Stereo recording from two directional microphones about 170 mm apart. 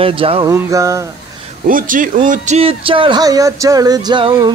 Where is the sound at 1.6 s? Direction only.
55° right (ahead or behind).